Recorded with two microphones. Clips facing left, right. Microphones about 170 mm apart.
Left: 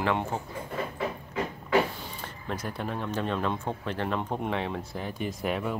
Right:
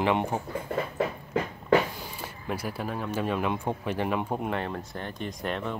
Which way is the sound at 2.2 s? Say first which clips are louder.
Right 2 dB; 10° right (ahead or behind).